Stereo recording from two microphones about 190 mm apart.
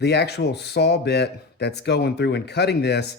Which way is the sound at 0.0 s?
60° left (ahead or behind).